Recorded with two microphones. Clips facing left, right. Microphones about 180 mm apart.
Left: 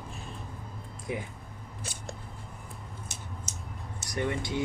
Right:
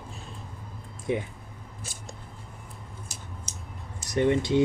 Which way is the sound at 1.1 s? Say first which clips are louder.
Right 7 dB; 25° right (ahead or behind).